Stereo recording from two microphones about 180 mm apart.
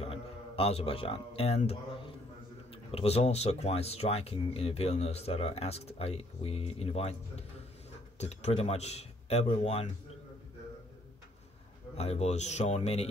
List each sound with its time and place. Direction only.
0.0 s speech: 30° left (ahead or behind)
11.9 s speech: 35° left (ahead or behind)